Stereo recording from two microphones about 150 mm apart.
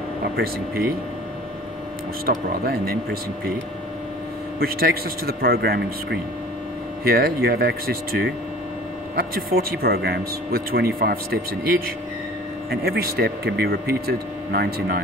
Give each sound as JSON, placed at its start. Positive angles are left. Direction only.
{"t": 0.4, "sound": "speech", "side_deg": -85}
{"t": 2.2, "sound": "speech", "side_deg": -90}
{"t": 4.6, "sound": "speech", "side_deg": -90}
{"t": 12.8, "sound": "speech", "side_deg": -90}